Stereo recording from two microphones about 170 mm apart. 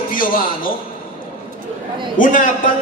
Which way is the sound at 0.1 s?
55° left (ahead or behind).